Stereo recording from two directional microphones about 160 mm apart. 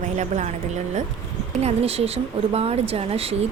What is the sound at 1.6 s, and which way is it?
Speech, 40° right (ahead or behind).